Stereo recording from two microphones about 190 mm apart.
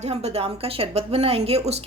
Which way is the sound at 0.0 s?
35° right (ahead or behind).